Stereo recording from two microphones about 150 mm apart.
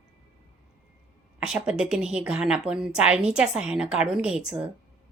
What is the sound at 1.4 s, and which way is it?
A woman's voice, 5° right (ahead or behind).